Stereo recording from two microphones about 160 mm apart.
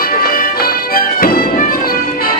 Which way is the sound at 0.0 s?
65° left (ahead or behind).